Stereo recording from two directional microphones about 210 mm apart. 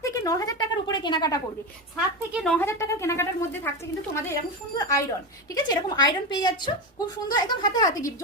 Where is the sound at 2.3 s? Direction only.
5° left (ahead or behind).